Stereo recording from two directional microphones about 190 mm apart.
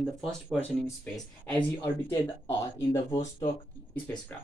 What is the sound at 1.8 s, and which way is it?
Speech, 15° left (ahead or behind).